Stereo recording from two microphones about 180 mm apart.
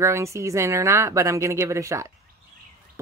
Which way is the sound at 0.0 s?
15° right (ahead or behind).